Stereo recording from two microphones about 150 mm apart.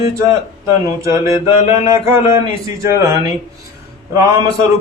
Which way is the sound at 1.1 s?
20° right (ahead or behind).